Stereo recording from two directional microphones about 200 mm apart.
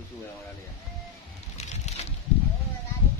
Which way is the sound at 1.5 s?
35° left (ahead or behind).